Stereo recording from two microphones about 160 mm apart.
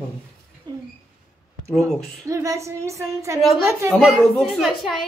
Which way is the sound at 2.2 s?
20° right (ahead or behind).